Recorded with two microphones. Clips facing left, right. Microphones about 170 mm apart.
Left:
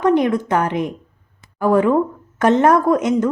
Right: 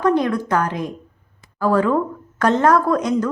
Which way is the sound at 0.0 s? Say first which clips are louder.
Left 2 dB; 20° left (ahead or behind).